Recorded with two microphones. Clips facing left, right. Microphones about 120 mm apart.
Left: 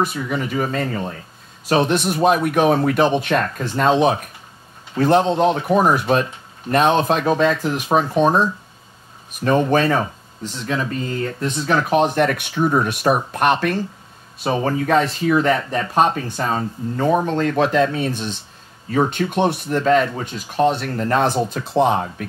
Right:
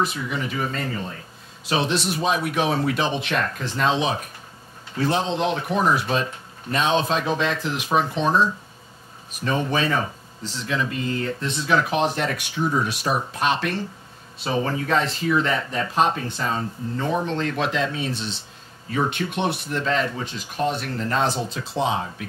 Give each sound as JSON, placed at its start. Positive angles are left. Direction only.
{"t": 0.0, "sound": "speech", "side_deg": 50}